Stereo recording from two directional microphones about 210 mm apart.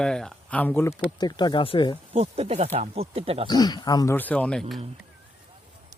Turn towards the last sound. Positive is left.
turn(degrees=0)  # may be behind; listen again after turning